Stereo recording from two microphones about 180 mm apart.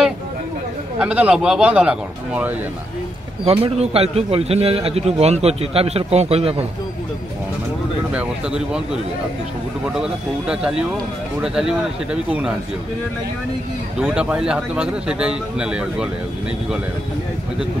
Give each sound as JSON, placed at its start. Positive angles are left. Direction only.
{"t": 0.9, "sound": "a man's voice", "side_deg": -5}
{"t": 3.4, "sound": "a man's voice", "side_deg": -35}
{"t": 8.1, "sound": "a man's voice", "side_deg": -5}
{"t": 14.0, "sound": "a man's voice", "side_deg": -5}